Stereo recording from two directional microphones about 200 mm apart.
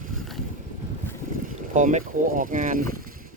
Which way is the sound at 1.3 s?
40° right (ahead or behind).